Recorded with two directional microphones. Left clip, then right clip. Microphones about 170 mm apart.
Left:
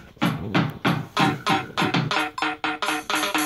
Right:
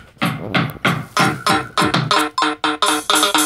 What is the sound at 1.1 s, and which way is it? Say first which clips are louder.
Music: right 5 dB; 60° right (ahead or behind).